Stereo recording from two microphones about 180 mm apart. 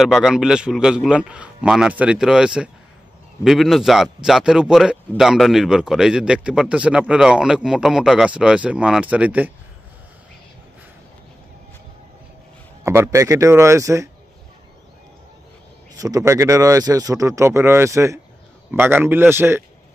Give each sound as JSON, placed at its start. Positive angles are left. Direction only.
{"t": 0.0, "sound": "speech", "side_deg": 0}
{"t": 12.8, "sound": "speech", "side_deg": -15}
{"t": 16.0, "sound": "speech", "side_deg": -20}